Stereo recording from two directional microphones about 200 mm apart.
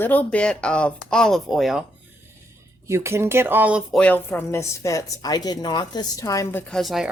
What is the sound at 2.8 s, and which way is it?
Speech, 15° right (ahead or behind).